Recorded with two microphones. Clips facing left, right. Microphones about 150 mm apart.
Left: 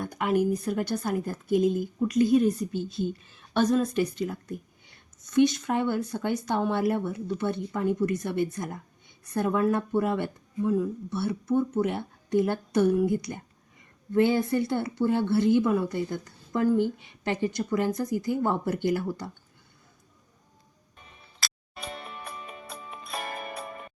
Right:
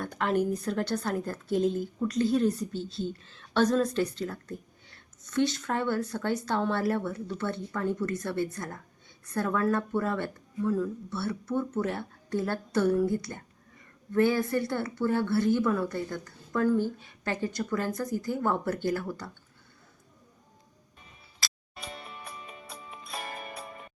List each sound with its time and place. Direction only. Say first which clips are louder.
0.0 s a woman's voice: left 2 dB; 10° left (ahead or behind)
21.4 s music: left 3 dB; 60° left (ahead or behind)